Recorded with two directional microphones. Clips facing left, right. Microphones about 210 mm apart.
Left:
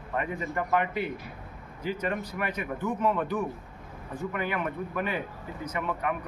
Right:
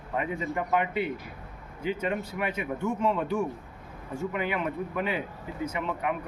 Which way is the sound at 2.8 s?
25° right (ahead or behind).